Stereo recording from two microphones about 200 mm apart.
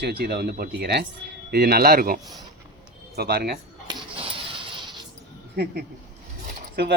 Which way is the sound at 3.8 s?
25° right (ahead or behind).